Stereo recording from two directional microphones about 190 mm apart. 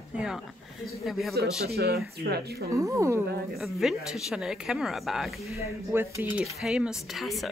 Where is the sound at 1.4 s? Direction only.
55° right (ahead or behind).